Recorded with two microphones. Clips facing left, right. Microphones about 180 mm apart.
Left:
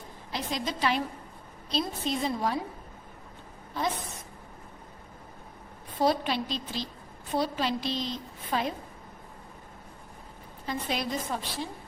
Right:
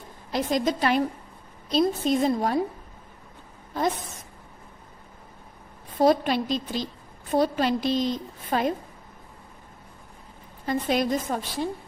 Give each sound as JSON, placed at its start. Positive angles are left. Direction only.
{"t": 0.3, "sound": "a woman's voice", "side_deg": -45}
{"t": 6.0, "sound": "a woman's voice", "side_deg": -50}
{"t": 10.7, "sound": "a woman's voice", "side_deg": -50}